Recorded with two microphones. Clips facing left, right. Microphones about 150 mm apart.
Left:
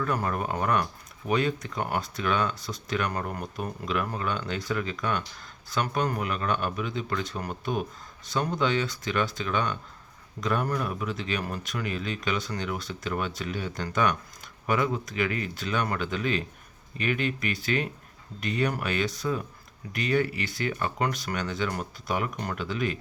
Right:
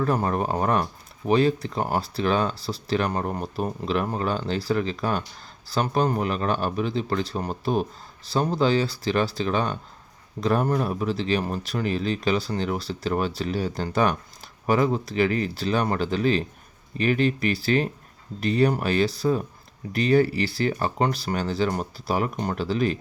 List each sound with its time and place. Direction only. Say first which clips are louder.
0.0 s speech: right 5 dB; 30° right (ahead or behind)